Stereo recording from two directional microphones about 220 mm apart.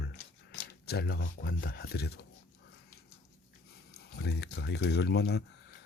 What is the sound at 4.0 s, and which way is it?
Speech, 50° left (ahead or behind).